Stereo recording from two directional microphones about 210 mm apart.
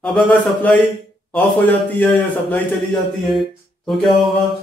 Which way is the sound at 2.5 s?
Centre (ahead or behind).